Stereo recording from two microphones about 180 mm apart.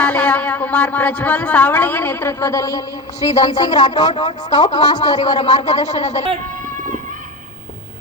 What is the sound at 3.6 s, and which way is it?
Speech, 20° left (ahead or behind).